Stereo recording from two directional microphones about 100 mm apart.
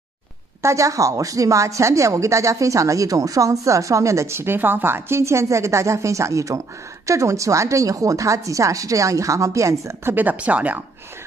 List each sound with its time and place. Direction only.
0.6 s a woman's voice: 30° right (ahead or behind); by 10.8 s 15° right (ahead or behind)